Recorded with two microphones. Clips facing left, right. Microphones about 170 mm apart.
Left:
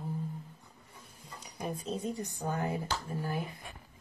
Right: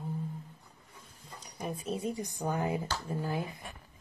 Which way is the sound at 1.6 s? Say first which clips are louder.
Right 1 dB; 10° right (ahead or behind).